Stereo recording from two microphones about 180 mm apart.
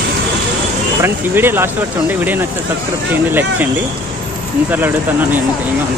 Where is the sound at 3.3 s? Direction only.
10° right (ahead or behind).